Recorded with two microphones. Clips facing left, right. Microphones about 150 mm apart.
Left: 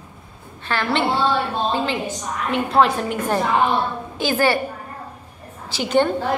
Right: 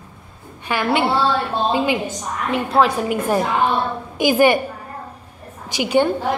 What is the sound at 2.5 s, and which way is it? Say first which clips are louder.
A woman's voice: even; centre (ahead or behind).